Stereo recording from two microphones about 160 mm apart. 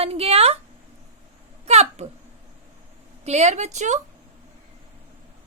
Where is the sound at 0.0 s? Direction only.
40° right (ahead or behind).